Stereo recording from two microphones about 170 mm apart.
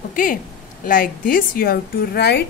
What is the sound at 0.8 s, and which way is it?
A woman's voice, 55° left (ahead or behind).